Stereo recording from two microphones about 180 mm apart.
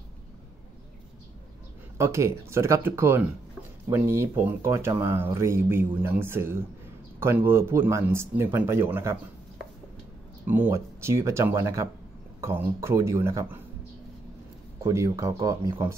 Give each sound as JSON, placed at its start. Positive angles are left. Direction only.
{"t": 2.0, "sound": "speech", "side_deg": -15}
{"t": 10.4, "sound": "speech", "side_deg": -10}
{"t": 14.8, "sound": "speech", "side_deg": -15}